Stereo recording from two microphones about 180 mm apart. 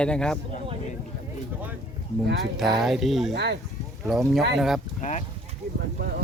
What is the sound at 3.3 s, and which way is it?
Speech, 70° right (ahead or behind).